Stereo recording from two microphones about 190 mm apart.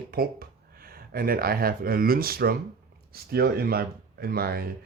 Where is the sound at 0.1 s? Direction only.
50° right (ahead or behind).